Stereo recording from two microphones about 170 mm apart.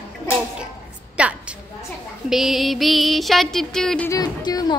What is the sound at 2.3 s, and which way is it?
Music, centre (ahead or behind).